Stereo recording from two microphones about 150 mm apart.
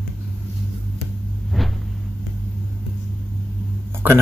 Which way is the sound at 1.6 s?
Centre (ahead or behind).